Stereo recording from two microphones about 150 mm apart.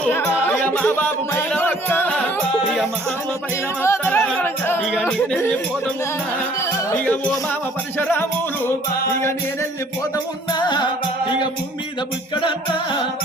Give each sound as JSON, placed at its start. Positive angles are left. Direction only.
{"t": 0.1, "sound": "music", "side_deg": 15}
{"t": 3.8, "sound": "speech", "side_deg": 15}
{"t": 4.9, "sound": "speech", "side_deg": 0}
{"t": 7.9, "sound": "speech", "side_deg": 15}
{"t": 10.5, "sound": "music", "side_deg": 30}
{"t": 12.4, "sound": "music", "side_deg": 30}